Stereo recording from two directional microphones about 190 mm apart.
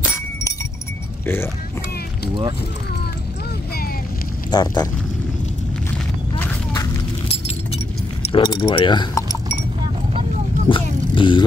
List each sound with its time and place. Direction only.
1.2 s speech: 10° left (ahead or behind)
4.5 s speech: 20° left (ahead or behind)
8.3 s speech: 25° left (ahead or behind)
10.7 s vehicle: 25° left (ahead or behind)